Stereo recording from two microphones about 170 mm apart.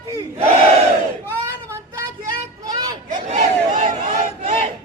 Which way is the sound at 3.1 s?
45° right (ahead or behind).